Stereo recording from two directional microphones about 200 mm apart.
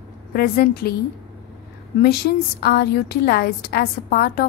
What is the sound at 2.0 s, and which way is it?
A woman's voice, 50° left (ahead or behind).